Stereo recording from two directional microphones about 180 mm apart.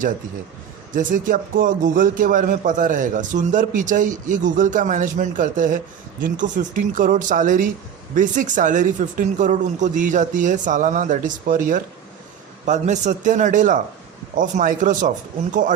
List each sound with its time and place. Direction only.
0.9 s a man's voice: 45° right (ahead or behind)